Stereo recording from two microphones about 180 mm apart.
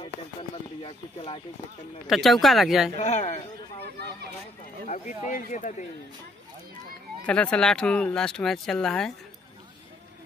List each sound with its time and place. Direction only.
0.8 s speech: 30° left (ahead or behind)
2.0 s speech: centre (ahead or behind)
3.0 s speech: 40° left (ahead or behind)
4.8 s speech: 40° left (ahead or behind)
7.2 s speech: 5° left (ahead or behind)